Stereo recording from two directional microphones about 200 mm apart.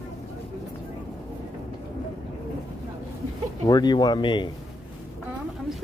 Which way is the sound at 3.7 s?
20° left (ahead or behind).